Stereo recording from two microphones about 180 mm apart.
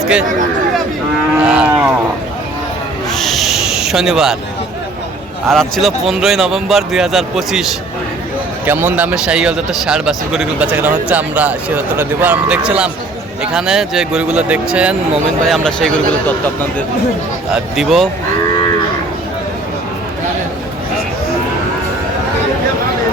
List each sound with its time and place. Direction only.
1.4 s speech: 5° right (ahead or behind)
3.1 s owl: centre (ahead or behind)
5.5 s speech: centre (ahead or behind)
17.5 s speech: centre (ahead or behind)